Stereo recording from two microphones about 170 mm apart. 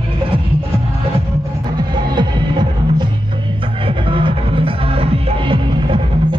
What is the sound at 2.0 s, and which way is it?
Music, 25° right (ahead or behind).